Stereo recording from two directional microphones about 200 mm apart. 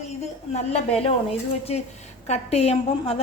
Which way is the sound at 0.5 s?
30° left (ahead or behind).